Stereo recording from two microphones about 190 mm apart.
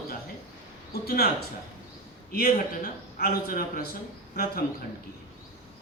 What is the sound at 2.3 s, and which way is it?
A man's voice, 50° left (ahead or behind).